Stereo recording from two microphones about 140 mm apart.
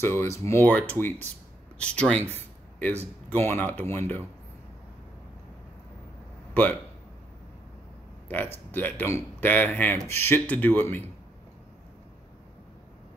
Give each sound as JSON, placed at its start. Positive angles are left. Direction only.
{"t": 0.0, "sound": "speech", "side_deg": 20}
{"t": 6.5, "sound": "speech", "side_deg": 10}
{"t": 8.3, "sound": "speech", "side_deg": 15}